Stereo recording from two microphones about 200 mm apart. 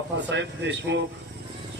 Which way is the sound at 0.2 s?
60° right (ahead or behind).